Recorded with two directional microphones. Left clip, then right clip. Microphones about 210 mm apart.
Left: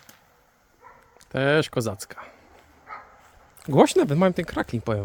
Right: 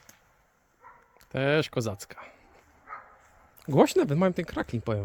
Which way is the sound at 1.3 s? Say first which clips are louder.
Left 4 dB; centre (ahead or behind).